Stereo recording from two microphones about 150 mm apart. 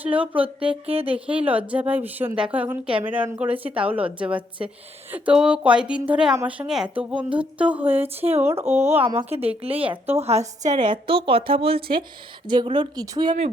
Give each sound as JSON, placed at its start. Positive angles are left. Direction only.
{"t": 0.0, "sound": "speech", "side_deg": -10}
{"t": 0.9, "sound": "speech", "side_deg": -40}
{"t": 1.3, "sound": "speech", "side_deg": -10}
{"t": 8.0, "sound": "speech", "side_deg": -40}
{"t": 8.3, "sound": "speech", "side_deg": -15}
{"t": 9.0, "sound": "a woman's voice", "side_deg": -40}
{"t": 10.8, "sound": "speech", "side_deg": -30}